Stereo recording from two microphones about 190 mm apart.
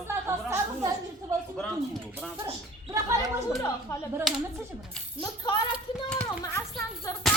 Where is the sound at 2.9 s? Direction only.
15° right (ahead or behind).